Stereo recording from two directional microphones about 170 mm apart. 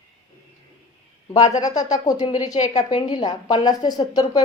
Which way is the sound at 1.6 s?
25° left (ahead or behind).